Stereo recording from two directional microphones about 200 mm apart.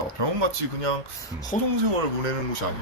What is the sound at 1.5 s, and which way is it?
Speech, 35° left (ahead or behind).